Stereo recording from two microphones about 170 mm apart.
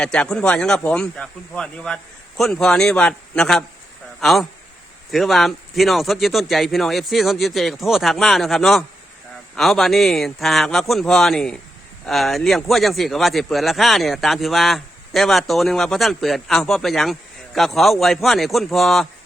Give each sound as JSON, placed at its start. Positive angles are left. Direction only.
{"t": 0.0, "sound": "speech", "side_deg": 5}